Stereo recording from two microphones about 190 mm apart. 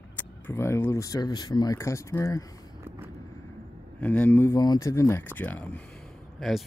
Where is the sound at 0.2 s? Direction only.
10° left (ahead or behind).